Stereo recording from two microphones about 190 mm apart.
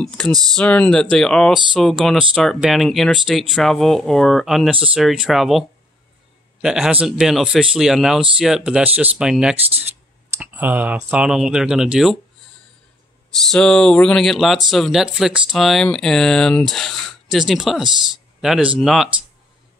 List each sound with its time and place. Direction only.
0.3 s speech: 20° right (ahead or behind)
0.6 s speech: 5° left (ahead or behind)
13.5 s speech: 5° left (ahead or behind)
17.8 s speech: 25° right (ahead or behind)
18.4 s speech: centre (ahead or behind)